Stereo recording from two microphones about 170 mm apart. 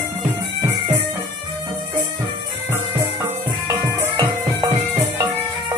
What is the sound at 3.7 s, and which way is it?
Music, 20° right (ahead or behind).